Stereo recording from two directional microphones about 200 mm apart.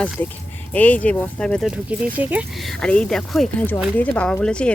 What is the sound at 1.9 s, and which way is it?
Speech, 5° right (ahead or behind).